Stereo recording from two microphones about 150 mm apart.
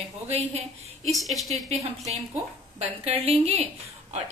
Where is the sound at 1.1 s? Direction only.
Centre (ahead or behind).